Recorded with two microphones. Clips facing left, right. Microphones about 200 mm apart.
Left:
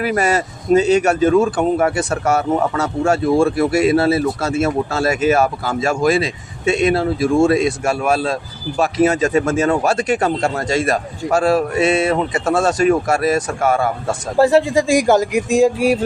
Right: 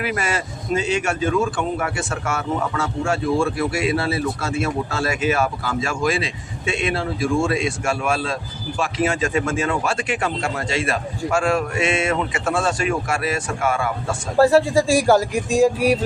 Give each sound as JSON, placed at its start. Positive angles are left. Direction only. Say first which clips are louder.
{"t": 0.0, "sound": "a man's voice", "louder": "left 7 dB", "side_deg": 40}
{"t": 14.3, "sound": "speech", "louder": "left 1 dB", "side_deg": 20}